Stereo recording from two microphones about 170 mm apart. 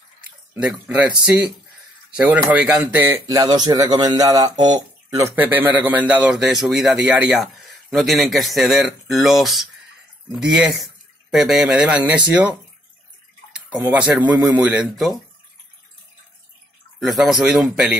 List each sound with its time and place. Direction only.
0.6 s a man's voice: 5° right (ahead or behind)
2.0 s speech: 5° right (ahead or behind)
3.3 s speech: 25° right (ahead or behind)
5.4 s a man's voice: 10° right (ahead or behind)
13.7 s speech: 5° right (ahead or behind)
17.0 s a man's voice: centre (ahead or behind)